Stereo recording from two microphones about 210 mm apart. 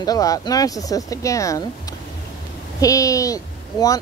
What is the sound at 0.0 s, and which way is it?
Speech, 15° left (ahead or behind).